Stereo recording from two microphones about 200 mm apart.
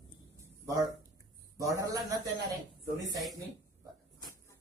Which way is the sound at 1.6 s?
15° right (ahead or behind).